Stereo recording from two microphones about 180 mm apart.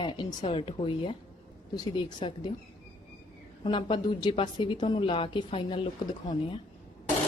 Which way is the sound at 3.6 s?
25° left (ahead or behind).